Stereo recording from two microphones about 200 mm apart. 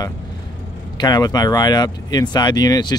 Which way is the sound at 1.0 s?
20° left (ahead or behind).